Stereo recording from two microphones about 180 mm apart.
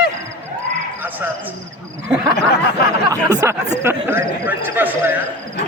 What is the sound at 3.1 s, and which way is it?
A man's voice, 20° right (ahead or behind).